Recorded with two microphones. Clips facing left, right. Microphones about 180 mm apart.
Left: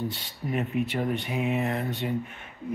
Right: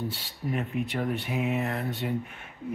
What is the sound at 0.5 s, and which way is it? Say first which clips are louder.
Speech: left 2 dB; 5° left (ahead or behind).